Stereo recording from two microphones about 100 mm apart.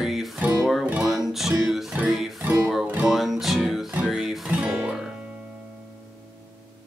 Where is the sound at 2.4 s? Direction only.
15° right (ahead or behind).